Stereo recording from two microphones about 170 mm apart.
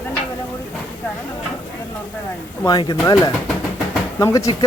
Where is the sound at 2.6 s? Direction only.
25° left (ahead or behind).